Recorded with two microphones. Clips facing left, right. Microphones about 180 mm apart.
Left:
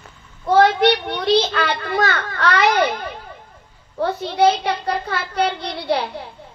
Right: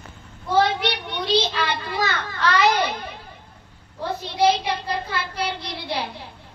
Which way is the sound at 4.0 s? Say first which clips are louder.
Left 5 dB; 65° left (ahead or behind).